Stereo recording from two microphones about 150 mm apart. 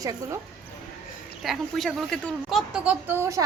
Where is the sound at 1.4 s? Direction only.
Centre (ahead or behind).